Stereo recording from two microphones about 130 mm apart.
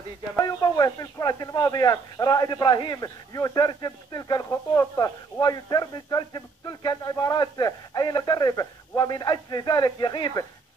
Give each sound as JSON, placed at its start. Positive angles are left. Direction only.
{"t": 0.4, "sound": "speech", "side_deg": 30}